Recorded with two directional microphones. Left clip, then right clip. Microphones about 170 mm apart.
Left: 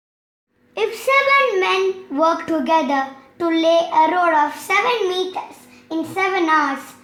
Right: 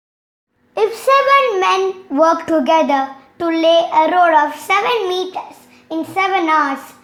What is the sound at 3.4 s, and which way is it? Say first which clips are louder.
A child's voice: right 3 dB; 20° right (ahead or behind).